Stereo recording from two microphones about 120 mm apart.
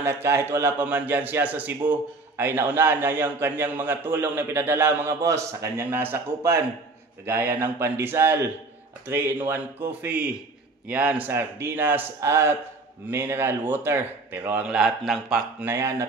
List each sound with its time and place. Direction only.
0.0 s a man's voice: 20° right (ahead or behind); by 15.4 s 5° right (ahead or behind)
15.6 s speech: 20° right (ahead or behind)